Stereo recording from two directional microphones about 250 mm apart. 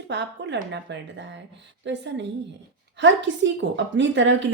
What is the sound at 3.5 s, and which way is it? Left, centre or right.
Speech, right.